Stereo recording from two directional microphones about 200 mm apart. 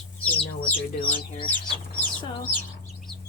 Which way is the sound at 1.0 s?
25° left (ahead or behind).